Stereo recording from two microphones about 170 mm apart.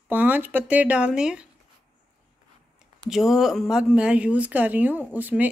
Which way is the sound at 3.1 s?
Centre (ahead or behind).